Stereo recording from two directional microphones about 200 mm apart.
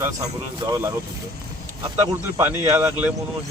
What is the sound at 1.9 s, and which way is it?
Speech, 10° right (ahead or behind).